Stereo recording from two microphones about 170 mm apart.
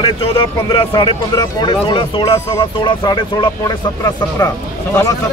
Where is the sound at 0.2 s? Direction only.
30° left (ahead or behind).